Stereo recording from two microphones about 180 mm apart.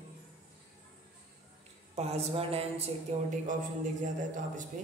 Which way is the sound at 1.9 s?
35° right (ahead or behind).